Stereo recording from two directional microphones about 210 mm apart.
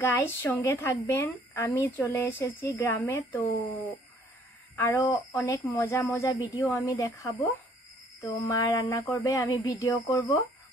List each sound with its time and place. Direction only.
0.0 s a woman's voice: 10° left (ahead or behind)
4.8 s a woman's voice: 10° left (ahead or behind)